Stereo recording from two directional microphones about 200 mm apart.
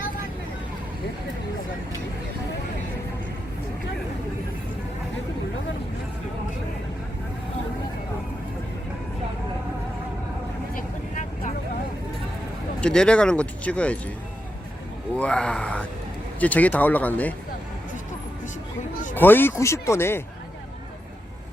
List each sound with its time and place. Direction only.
10.8 s vehicle: 40° left (ahead or behind)
12.8 s speech: 5° left (ahead or behind)
15.1 s speech: 5° left (ahead or behind)
19.1 s speech: 10° left (ahead or behind)